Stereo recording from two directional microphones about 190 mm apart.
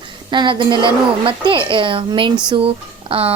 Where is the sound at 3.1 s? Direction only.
30° right (ahead or behind).